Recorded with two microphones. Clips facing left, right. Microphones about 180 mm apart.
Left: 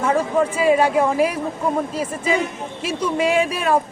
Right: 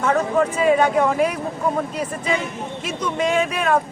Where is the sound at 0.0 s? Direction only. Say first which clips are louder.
Even; 10° left (ahead or behind).